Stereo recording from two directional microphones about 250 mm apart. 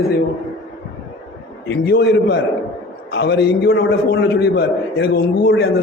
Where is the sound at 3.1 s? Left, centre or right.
Left.